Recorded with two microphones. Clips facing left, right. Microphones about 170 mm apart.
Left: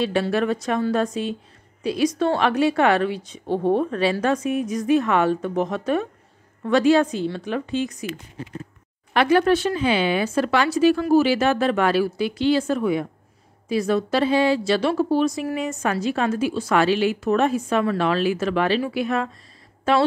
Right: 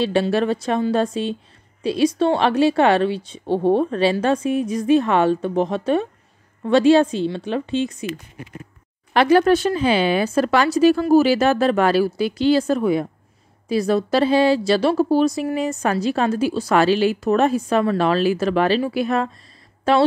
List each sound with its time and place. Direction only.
0.0 s a woman's voice: 30° right (ahead or behind)